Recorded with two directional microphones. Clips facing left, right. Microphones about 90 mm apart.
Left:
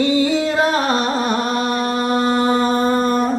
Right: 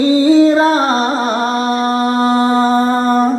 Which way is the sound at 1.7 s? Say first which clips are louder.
Right 4 dB; 30° right (ahead or behind).